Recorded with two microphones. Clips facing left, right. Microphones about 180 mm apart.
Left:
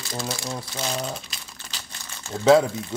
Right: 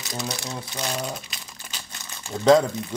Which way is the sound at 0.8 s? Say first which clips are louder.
Even; 5° left (ahead or behind).